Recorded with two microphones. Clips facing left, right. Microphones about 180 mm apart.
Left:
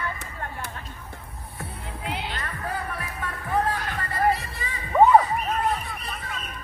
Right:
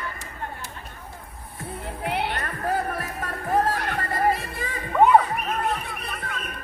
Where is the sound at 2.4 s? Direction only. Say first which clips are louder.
Right 5 dB; 45° right (ahead or behind).